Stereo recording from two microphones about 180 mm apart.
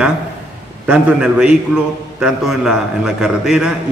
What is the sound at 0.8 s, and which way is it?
A man's voice, 5° right (ahead or behind).